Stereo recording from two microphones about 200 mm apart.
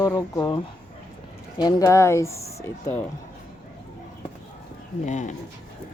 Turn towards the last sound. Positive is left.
turn(degrees=35)  # may be behind; listen again after turning